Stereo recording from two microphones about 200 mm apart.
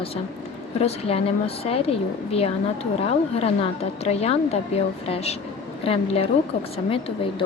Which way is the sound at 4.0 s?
30° left (ahead or behind).